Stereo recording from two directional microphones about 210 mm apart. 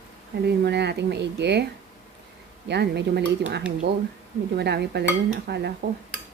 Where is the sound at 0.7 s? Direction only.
55° right (ahead or behind).